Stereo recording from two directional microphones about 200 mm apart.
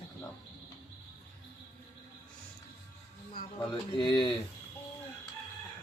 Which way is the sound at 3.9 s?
25° left (ahead or behind).